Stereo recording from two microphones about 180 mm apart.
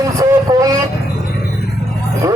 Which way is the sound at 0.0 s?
20° right (ahead or behind).